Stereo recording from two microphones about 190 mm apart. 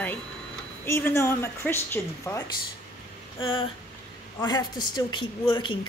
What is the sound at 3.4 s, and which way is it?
A woman's voice, 25° left (ahead or behind).